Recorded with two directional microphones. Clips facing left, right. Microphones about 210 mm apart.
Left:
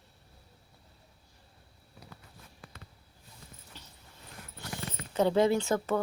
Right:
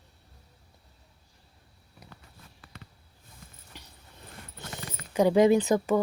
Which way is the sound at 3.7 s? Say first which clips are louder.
Right 4 dB; 15° right (ahead or behind).